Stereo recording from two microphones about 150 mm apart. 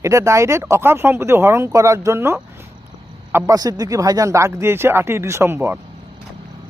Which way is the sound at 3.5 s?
25° right (ahead or behind).